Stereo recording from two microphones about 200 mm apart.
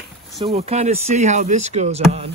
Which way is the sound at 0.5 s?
35° right (ahead or behind).